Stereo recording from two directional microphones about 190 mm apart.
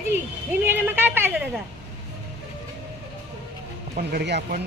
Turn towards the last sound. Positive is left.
turn(degrees=-55)  # may be behind; listen again after turning